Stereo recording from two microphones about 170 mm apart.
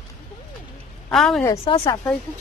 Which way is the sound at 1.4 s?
20° left (ahead or behind).